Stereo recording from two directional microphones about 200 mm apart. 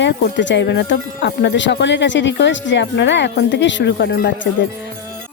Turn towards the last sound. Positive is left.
turn(degrees=60)  # may be behind; listen again after turning